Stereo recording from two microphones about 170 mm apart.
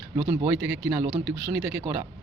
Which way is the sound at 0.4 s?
10° right (ahead or behind).